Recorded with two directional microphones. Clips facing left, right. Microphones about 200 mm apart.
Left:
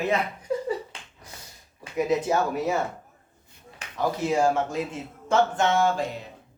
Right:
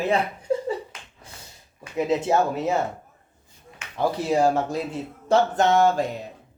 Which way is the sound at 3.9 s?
35° right (ahead or behind).